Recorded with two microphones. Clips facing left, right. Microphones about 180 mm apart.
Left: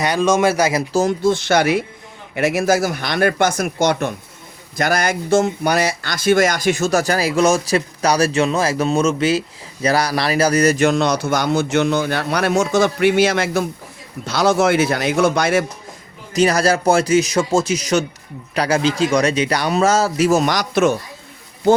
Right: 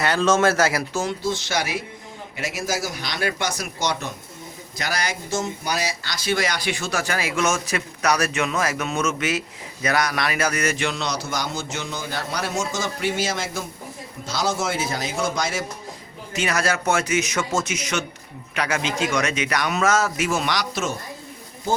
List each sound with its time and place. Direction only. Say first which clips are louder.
0.0 s speech: left 3 dB; 15° left (ahead or behind)
0.9 s a man's voice: left 9 dB; 50° left (ahead or behind)
16.3 s speech: left 8 dB; 35° left (ahead or behind)